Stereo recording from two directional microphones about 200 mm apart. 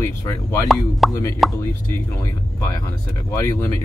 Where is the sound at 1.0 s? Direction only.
Centre (ahead or behind).